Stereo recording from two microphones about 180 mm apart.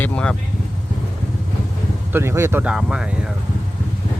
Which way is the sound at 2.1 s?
15° right (ahead or behind).